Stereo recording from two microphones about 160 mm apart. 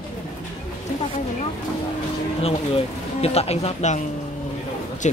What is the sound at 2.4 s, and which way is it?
Speech, 40° left (ahead or behind).